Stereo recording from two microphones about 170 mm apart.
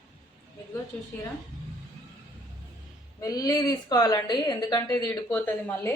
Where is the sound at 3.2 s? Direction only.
20° left (ahead or behind).